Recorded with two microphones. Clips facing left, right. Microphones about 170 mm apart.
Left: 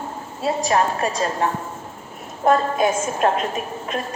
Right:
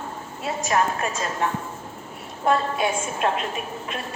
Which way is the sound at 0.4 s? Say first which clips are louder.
Left 4 dB; 35° left (ahead or behind).